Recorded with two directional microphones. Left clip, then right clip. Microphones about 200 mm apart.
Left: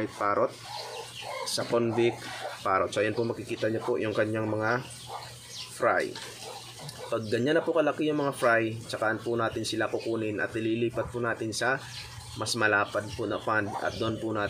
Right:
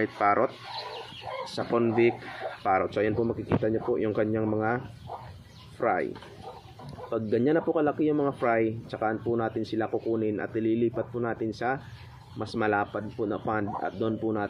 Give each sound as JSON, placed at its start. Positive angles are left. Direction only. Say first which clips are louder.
{"t": 0.0, "sound": "speech", "louder": "right 3 dB", "side_deg": -15}
{"t": 7.1, "sound": "speech", "louder": "right 2 dB", "side_deg": -15}